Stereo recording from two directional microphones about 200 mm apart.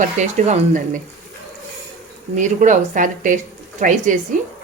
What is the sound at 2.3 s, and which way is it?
Speech, 40° right (ahead or behind).